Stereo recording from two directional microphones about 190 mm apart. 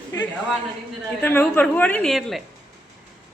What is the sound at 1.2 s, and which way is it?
A woman's voice, 10° left (ahead or behind).